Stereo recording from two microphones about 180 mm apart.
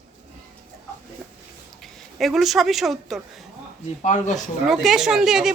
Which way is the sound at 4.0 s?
40° left (ahead or behind).